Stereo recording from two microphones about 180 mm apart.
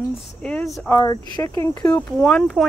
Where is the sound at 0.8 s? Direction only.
20° left (ahead or behind); by 2.7 s centre (ahead or behind).